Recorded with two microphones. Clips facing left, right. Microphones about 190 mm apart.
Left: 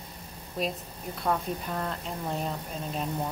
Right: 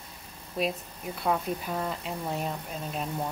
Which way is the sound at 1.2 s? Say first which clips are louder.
Right 1 dB; 5° right (ahead or behind).